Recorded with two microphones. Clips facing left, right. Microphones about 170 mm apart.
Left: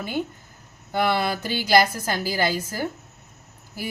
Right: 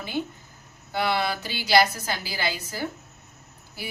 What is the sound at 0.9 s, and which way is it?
A woman's voice, 50° left (ahead or behind).